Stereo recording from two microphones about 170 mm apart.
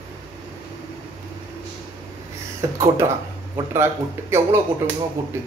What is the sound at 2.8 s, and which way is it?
Speech, 15° right (ahead or behind).